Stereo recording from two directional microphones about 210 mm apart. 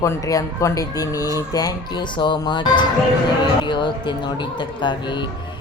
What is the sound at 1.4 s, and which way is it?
Mantra, 15° left (ahead or behind).